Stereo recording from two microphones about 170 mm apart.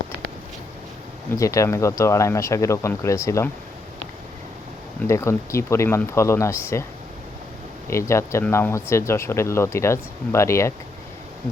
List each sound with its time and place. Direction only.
1.3 s speech: 20° left (ahead or behind)
5.0 s speech: 15° left (ahead or behind)
7.9 s speech: 15° left (ahead or behind)